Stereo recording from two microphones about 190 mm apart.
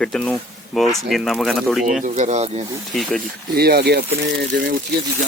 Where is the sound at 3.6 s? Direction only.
55° right (ahead or behind).